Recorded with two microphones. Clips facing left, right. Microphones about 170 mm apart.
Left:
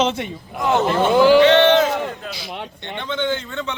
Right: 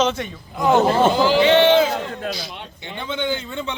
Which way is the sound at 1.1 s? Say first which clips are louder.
Left 5 dB; 65° left (ahead or behind).